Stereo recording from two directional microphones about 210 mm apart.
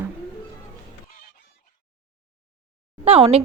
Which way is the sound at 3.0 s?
30° right (ahead or behind).